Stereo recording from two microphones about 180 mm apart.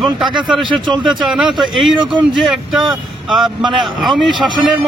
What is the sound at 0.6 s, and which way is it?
Speech, 25° right (ahead or behind).